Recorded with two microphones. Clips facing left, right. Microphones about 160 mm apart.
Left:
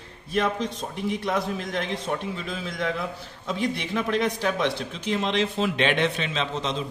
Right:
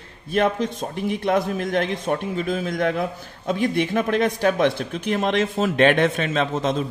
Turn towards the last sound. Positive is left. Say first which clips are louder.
# right 6 dB
turn(degrees=-50)  # may be behind; listen again after turning